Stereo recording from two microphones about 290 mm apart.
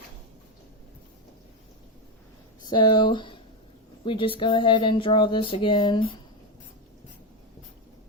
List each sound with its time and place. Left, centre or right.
2.6 s speech: centre